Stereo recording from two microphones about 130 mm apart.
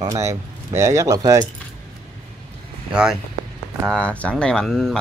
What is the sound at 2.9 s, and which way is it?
Speech, 5° right (ahead or behind).